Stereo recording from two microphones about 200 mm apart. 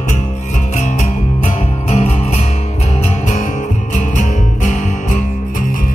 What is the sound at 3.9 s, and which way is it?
Music, 40° left (ahead or behind).